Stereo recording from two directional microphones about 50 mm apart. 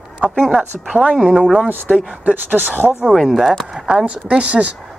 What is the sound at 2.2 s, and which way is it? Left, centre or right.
Speech, right.